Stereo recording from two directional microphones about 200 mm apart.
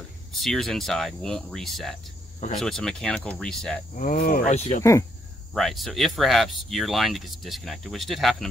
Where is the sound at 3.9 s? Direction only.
45° left (ahead or behind).